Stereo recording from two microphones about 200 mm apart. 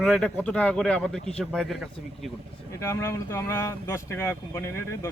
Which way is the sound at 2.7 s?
15° left (ahead or behind).